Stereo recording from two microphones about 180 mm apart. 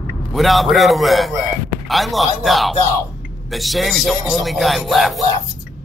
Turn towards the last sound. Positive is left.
turn(degrees=0)  # may be behind; listen again after turning